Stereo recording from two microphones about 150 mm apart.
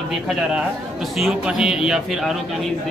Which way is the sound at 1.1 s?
Centre (ahead or behind).